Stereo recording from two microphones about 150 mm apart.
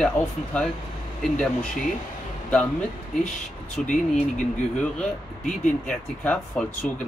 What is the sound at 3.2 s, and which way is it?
Speech, 55° left (ahead or behind).